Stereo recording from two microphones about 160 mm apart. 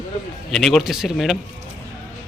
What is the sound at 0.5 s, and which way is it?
Speech, centre (ahead or behind).